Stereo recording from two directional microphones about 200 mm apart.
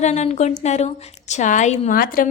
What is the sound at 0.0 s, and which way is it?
A woman's voice, 35° left (ahead or behind).